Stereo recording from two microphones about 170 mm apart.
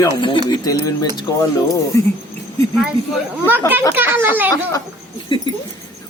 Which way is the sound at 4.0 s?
10° right (ahead or behind).